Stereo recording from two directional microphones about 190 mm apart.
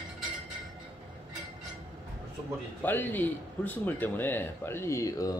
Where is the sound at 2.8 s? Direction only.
10° left (ahead or behind).